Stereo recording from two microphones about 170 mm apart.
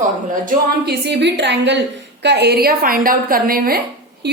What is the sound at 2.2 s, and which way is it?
A woman's voice, 75° right (ahead or behind).